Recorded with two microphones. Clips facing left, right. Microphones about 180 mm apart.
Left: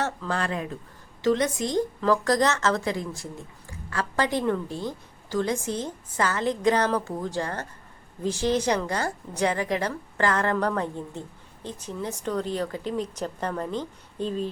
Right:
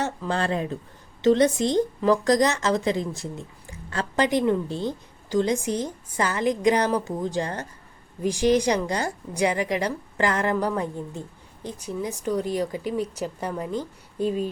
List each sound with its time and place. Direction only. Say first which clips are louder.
0.0 s a woman's voice: right 1 dB; 15° right (ahead or behind)
0.3 s a woman's voice: right 4 dB; 30° right (ahead or behind); by 14.5 s 10° right (ahead or behind)